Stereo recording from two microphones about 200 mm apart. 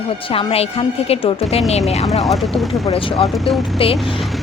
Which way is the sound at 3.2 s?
Centre (ahead or behind).